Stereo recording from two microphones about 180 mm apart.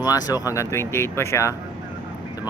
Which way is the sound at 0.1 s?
20° left (ahead or behind).